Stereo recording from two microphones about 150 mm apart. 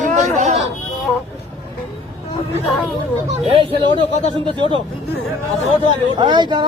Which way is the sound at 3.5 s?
35° right (ahead or behind).